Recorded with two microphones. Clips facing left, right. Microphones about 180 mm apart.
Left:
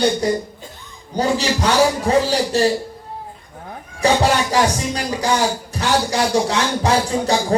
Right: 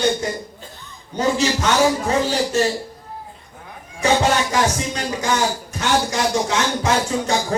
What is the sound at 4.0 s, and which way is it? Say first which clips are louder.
A man's voice: left 1 dB; 35° left (ahead or behind).